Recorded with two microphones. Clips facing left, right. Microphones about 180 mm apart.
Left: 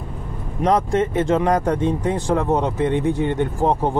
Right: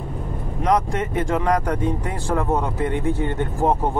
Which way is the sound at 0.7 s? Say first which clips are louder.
Left 3 dB; 30° left (ahead or behind).